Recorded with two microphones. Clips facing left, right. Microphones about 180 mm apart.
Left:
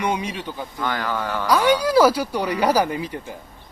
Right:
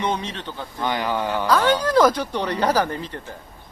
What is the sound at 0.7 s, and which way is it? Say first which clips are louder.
Speech: right 2 dB; 20° right (ahead or behind).